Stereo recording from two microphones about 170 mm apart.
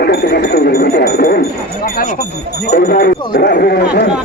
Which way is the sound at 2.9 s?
60° left (ahead or behind).